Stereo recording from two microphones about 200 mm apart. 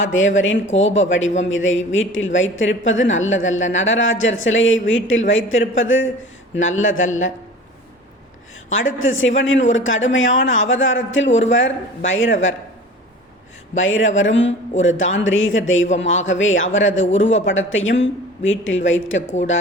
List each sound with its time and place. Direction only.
0.0 s a woman's voice: 75° left (ahead or behind)
8.7 s a woman's voice: 75° left (ahead or behind)
13.7 s a woman's voice: 75° left (ahead or behind)